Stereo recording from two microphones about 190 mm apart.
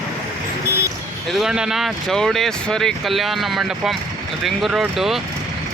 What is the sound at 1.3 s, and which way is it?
Speech, centre (ahead or behind).